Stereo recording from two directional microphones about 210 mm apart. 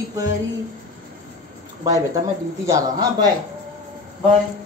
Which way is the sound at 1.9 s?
15° right (ahead or behind).